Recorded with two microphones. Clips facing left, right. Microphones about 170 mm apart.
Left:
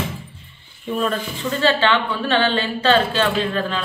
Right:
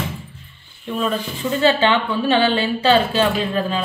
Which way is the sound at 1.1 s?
15° right (ahead or behind).